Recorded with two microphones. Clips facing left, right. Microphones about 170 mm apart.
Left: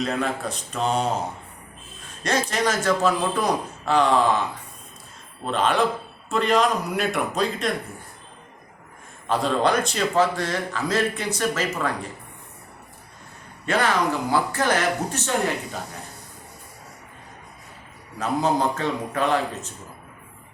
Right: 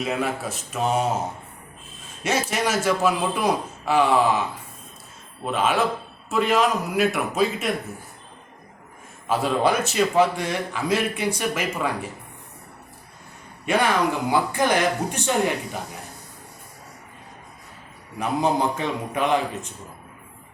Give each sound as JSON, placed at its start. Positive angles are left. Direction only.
{"t": 0.0, "sound": "a man's voice", "side_deg": -5}
{"t": 2.2, "sound": "a man's voice", "side_deg": -10}
{"t": 5.5, "sound": "a man's voice", "side_deg": -5}
{"t": 9.3, "sound": "a man's voice", "side_deg": -5}
{"t": 13.7, "sound": "a man's voice", "side_deg": -10}
{"t": 18.2, "sound": "a man's voice", "side_deg": -15}